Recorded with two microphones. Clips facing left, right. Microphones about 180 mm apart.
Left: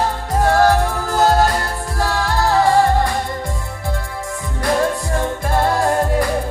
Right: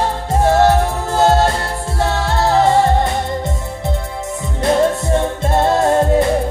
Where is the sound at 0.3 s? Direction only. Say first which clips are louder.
Right 2 dB; 25° right (ahead or behind).